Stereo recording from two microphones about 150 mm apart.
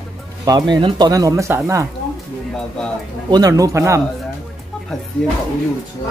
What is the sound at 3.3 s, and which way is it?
Speech, 25° right (ahead or behind).